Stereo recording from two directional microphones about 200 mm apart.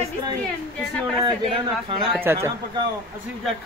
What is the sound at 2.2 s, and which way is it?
Speech, 10° right (ahead or behind).